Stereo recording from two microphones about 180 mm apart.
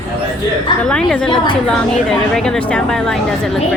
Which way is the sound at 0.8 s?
5° left (ahead or behind).